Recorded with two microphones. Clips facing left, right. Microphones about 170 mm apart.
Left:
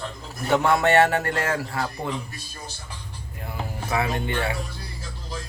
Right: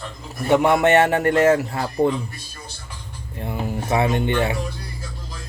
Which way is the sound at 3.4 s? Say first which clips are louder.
Right 7 dB; 25° right (ahead or behind).